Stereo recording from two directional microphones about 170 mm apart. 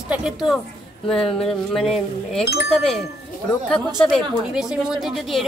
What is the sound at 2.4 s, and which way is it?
Speech, 75° left (ahead or behind).